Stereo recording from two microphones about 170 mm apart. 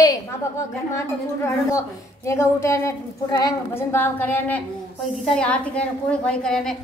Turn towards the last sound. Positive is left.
turn(degrees=5)  # may be behind; listen again after turning